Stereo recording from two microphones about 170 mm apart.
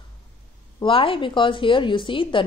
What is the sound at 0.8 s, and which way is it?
A woman's voice, 30° left (ahead or behind).